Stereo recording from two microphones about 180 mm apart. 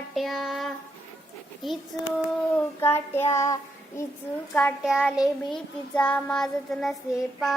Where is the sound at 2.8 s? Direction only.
15° left (ahead or behind).